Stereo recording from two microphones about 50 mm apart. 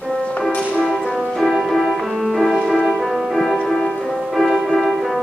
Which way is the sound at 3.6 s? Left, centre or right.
Centre.